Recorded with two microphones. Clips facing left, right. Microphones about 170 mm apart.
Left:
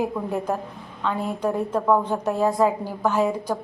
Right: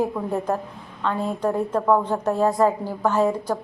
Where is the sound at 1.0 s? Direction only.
10° left (ahead or behind).